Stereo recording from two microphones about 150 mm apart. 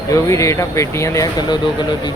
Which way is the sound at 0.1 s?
20° left (ahead or behind).